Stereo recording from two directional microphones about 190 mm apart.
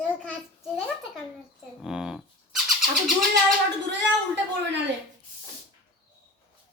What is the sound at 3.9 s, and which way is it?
Speech, 65° right (ahead or behind).